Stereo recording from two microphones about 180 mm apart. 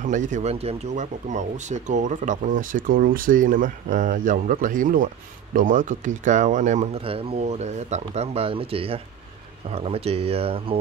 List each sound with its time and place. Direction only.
0.0 s speech: 45° right (ahead or behind)